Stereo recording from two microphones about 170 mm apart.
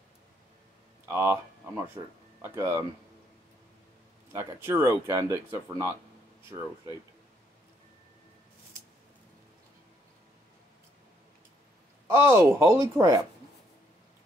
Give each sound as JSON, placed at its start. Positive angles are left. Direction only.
{"t": 1.0, "sound": "speech", "side_deg": -15}
{"t": 4.3, "sound": "speech", "side_deg": -15}
{"t": 12.2, "sound": "speech", "side_deg": -15}